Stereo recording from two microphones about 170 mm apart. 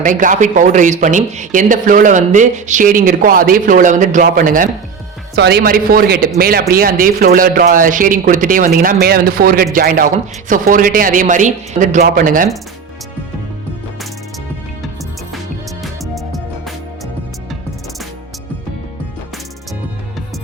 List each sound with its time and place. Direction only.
0.0 s speech: 50° right (ahead or behind)
5.3 s speech: 70° right (ahead or behind); by 12.5 s 55° right (ahead or behind)
15.8 s music: centre (ahead or behind)